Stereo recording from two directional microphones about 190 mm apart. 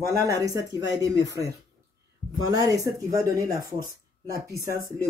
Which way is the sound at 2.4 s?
20° right (ahead or behind).